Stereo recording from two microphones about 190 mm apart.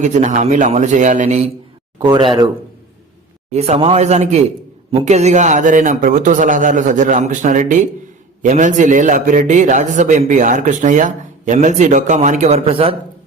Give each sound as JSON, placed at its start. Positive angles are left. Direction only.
{"t": 0.0, "sound": "a man's voice", "side_deg": -40}
{"t": 2.0, "sound": "speech", "side_deg": -25}
{"t": 3.5, "sound": "a man's voice", "side_deg": -35}